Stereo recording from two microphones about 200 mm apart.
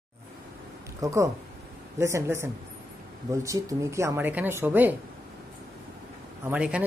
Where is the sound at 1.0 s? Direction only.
15° right (ahead or behind).